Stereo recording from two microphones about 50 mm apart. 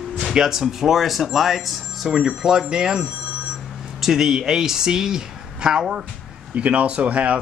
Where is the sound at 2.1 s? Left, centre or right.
Centre.